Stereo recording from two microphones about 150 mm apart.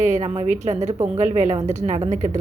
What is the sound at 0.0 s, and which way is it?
A woman's voice, 50° right (ahead or behind).